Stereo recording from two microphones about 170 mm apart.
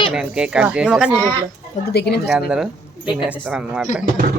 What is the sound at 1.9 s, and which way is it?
Speech, 70° left (ahead or behind).